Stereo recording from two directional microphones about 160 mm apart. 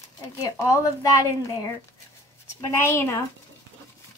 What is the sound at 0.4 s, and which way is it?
A woman's voice, 20° left (ahead or behind).